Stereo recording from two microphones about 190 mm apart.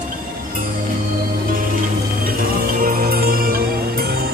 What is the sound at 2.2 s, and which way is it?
Music, 50° right (ahead or behind).